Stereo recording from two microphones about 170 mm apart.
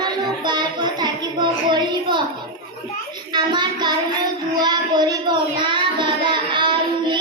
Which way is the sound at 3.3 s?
25° right (ahead or behind).